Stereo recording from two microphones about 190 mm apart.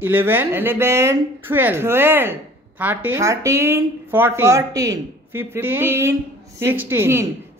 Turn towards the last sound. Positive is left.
turn(degrees=-15)  # may be behind; listen again after turning